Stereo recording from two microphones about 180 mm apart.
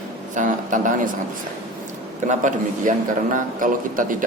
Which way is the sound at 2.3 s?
45° right (ahead or behind).